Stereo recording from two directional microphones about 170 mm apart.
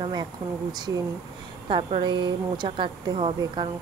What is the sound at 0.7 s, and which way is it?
Speech, 25° right (ahead or behind).